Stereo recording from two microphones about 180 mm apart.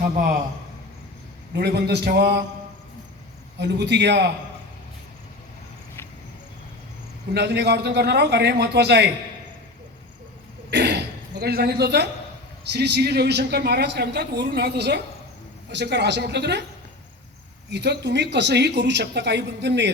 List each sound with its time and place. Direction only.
0.0 s a man's voice: 50° right (ahead or behind)
1.5 s a woman's voice: 65° right (ahead or behind)
3.6 s speech: 70° right (ahead or behind)
7.3 s speech: 70° right (ahead or behind)
10.7 s a woman's voice: 70° right (ahead or behind)
17.7 s speech: 75° right (ahead or behind)